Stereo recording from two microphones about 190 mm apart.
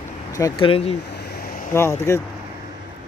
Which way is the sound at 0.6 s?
30° left (ahead or behind).